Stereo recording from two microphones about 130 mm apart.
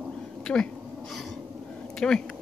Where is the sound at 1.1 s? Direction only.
Centre (ahead or behind).